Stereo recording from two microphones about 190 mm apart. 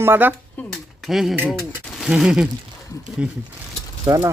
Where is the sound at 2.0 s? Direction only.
Centre (ahead or behind).